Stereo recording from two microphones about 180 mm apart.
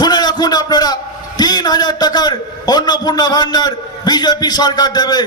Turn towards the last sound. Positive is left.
turn(degrees=25)  # may be behind; listen again after turning